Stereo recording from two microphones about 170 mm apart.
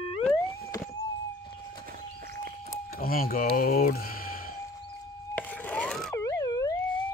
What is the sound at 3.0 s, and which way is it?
Speech, 60° left (ahead or behind).